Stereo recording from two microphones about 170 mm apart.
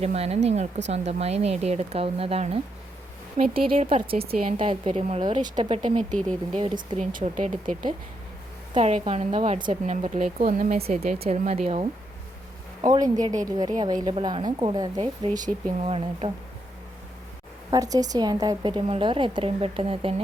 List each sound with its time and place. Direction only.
0.0 s speech: 40° right (ahead or behind)
3.7 s speech: 30° right (ahead or behind)
5.2 s a woman's voice: 25° right (ahead or behind)
6.1 s speech: 5° left (ahead or behind)
6.6 s speech: 30° right (ahead or behind)
7.0 s speech: 50° right (ahead or behind)
8.7 s speech: 40° right (ahead or behind)
10.4 s speech: 50° right (ahead or behind)
10.8 s speech: 35° right (ahead or behind)
12.9 s a woman's voice: 25° right (ahead or behind)
17.7 s a woman's voice: 20° right (ahead or behind)